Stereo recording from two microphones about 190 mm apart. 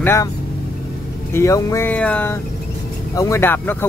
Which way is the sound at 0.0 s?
15° left (ahead or behind).